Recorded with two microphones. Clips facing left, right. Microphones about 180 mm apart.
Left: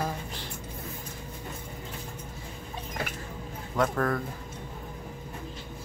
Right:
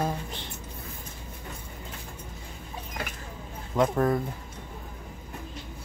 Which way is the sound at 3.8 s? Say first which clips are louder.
Right 3 dB; 20° right (ahead or behind).